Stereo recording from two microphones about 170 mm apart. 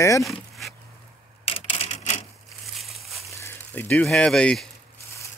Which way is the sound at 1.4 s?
35° left (ahead or behind).